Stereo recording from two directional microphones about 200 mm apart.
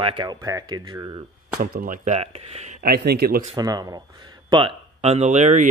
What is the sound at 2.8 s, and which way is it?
Speech, 50° right (ahead or behind).